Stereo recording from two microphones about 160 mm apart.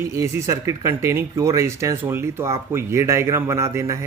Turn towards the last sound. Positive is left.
turn(degrees=-20)  # may be behind; listen again after turning